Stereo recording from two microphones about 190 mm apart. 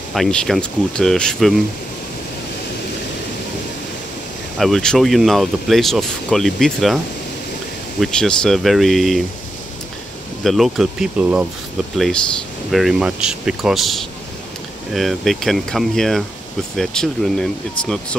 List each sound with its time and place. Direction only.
0.1 s speech: centre (ahead or behind)
4.6 s speech: centre (ahead or behind)
8.0 s speech: 5° left (ahead or behind)
10.4 s speech: centre (ahead or behind)
12.7 s speech: 5° right (ahead or behind)